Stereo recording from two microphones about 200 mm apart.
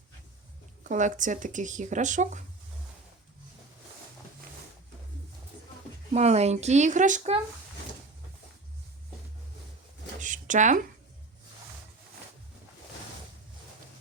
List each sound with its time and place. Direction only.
0.9 s speech: 40° right (ahead or behind)
6.1 s speech: 35° right (ahead or behind)
10.2 s a sound: 40° right (ahead or behind)